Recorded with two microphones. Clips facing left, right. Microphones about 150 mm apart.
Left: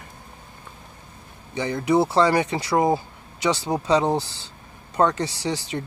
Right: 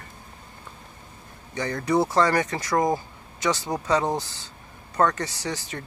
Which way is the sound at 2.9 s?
30° left (ahead or behind).